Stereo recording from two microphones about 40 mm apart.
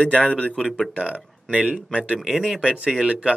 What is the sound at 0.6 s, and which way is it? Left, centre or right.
Speech, centre.